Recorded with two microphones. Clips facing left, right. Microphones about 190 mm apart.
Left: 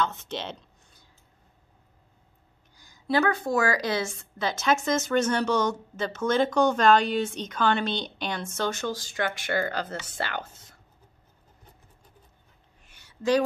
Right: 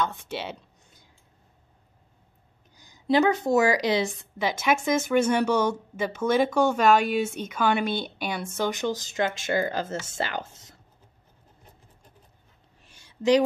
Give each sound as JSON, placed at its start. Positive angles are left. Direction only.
{"t": 0.0, "sound": "a woman's voice", "side_deg": -10}
{"t": 2.8, "sound": "a woman's voice", "side_deg": -20}